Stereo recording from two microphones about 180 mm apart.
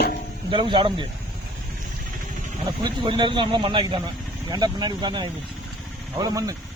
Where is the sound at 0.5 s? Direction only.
25° right (ahead or behind).